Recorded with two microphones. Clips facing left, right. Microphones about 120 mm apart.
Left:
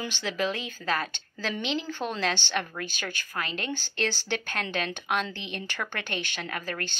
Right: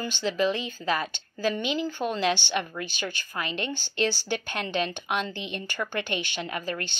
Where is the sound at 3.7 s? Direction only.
45° left (ahead or behind).